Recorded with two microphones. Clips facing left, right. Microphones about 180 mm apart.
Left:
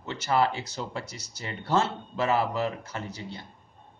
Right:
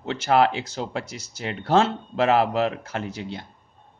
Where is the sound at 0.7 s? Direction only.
90° right.